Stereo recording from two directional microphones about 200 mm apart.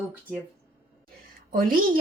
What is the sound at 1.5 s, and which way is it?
Speech, 45° right (ahead or behind).